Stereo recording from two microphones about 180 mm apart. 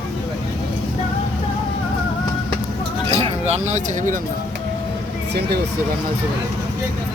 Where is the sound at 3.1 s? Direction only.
35° right (ahead or behind).